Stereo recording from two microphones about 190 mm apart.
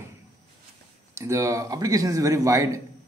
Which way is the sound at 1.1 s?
15° right (ahead or behind).